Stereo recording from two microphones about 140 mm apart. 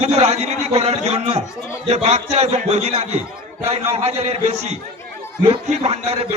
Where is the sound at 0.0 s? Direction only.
50° right (ahead or behind).